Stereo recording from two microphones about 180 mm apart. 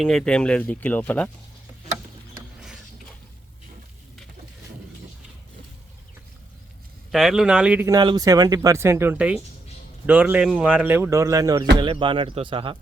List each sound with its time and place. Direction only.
0.0 s speech: 5° left (ahead or behind)
7.1 s speech: centre (ahead or behind)
7.9 s speech: 20° right (ahead or behind)